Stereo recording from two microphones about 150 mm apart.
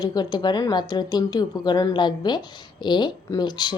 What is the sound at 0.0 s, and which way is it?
Speech, 25° left (ahead or behind).